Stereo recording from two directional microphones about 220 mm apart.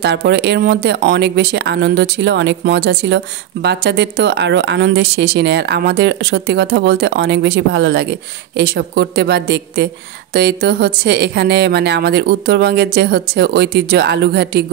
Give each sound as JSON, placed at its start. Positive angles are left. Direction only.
{"t": 0.0, "sound": "speech", "side_deg": -50}